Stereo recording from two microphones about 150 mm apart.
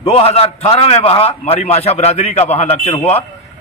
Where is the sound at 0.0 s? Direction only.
40° left (ahead or behind).